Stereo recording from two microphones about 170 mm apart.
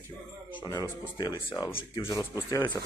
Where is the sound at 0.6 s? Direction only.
25° left (ahead or behind).